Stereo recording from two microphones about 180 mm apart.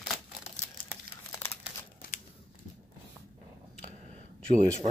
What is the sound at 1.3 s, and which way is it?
Crumpling, 10° left (ahead or behind).